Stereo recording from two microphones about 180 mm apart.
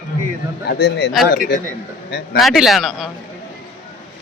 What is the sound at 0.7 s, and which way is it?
Speech, 60° left (ahead or behind).